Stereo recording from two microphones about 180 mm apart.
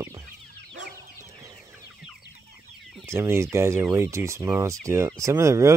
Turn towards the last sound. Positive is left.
turn(degrees=-15)  # may be behind; listen again after turning